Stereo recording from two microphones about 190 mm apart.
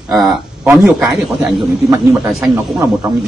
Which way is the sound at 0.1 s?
Centre (ahead or behind).